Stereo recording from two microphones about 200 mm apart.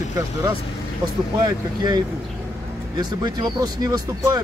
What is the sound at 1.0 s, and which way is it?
Speech, 20° right (ahead or behind).